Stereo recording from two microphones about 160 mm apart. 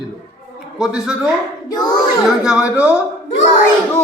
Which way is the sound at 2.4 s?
5° right (ahead or behind).